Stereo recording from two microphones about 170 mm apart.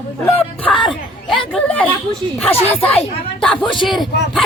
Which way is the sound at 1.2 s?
Centre (ahead or behind).